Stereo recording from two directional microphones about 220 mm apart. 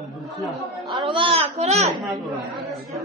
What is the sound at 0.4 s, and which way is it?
Speech, centre (ahead or behind).